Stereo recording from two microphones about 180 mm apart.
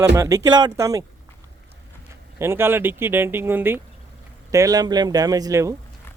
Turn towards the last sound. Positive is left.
turn(degrees=-20)  # may be behind; listen again after turning